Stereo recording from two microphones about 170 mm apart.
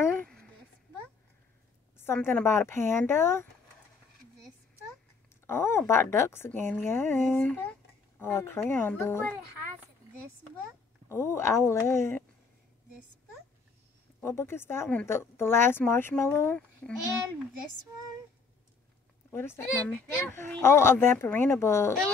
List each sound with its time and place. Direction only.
0.0 s a sound: 10° left (ahead or behind)
2.0 s speech: 15° left (ahead or behind)
5.5 s speech: 15° left (ahead or behind)
11.1 s speech: 15° left (ahead or behind)
14.2 s speech: 15° left (ahead or behind)
19.3 s speech: 15° left (ahead or behind)